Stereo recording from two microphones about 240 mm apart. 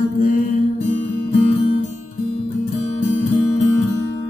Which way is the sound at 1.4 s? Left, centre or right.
Left.